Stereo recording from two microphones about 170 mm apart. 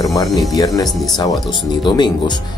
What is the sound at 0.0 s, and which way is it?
Music, 20° left (ahead or behind).